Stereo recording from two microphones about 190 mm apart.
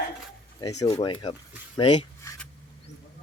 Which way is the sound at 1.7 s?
25° left (ahead or behind).